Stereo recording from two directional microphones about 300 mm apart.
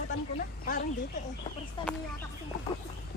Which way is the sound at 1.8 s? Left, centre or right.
Centre.